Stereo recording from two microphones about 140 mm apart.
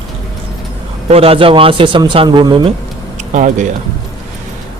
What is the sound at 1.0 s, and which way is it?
Speech, 45° right (ahead or behind).